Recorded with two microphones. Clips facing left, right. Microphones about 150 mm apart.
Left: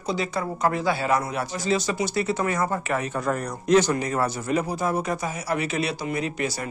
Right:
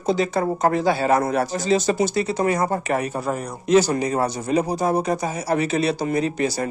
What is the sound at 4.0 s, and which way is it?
Speech, 20° right (ahead or behind).